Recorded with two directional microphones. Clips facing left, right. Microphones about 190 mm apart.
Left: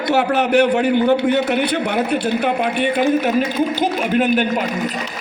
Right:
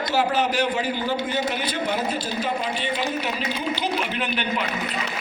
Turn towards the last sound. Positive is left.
turn(degrees=45)  # may be behind; listen again after turning